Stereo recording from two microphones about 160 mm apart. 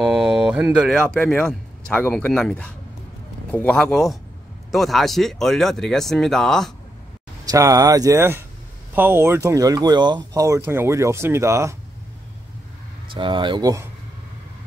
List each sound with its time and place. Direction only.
0.0 s speech: 5° right (ahead or behind)
7.4 s speech: 20° right (ahead or behind)
13.1 s speech: 30° right (ahead or behind)